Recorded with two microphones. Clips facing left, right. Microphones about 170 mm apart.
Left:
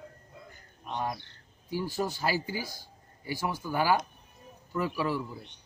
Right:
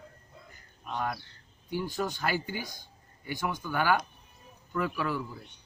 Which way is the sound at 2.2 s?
35° left (ahead or behind).